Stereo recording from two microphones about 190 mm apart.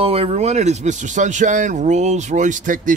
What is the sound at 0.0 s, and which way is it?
Speech, 30° right (ahead or behind).